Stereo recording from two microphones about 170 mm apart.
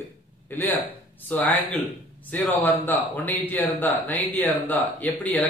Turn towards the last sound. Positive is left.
turn(degrees=10)  # may be behind; listen again after turning